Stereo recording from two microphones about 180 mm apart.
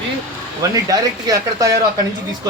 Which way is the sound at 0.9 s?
20° right (ahead or behind).